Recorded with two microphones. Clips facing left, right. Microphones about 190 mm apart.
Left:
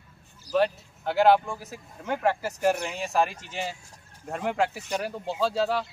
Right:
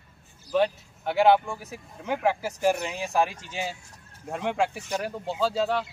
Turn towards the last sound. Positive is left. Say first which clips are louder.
# even
turn(degrees=0)  # may be behind; listen again after turning